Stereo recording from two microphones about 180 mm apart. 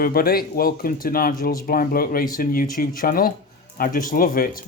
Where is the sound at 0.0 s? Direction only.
55° left (ahead or behind).